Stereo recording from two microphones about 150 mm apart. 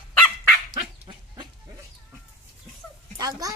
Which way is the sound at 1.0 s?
30° right (ahead or behind).